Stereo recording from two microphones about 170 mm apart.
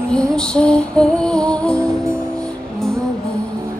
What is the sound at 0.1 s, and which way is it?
Music, 5° left (ahead or behind).